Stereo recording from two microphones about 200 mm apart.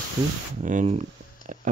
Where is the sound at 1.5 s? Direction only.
35° right (ahead or behind).